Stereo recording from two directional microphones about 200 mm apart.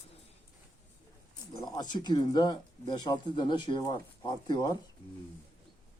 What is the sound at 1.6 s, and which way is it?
Speech, 20° left (ahead or behind).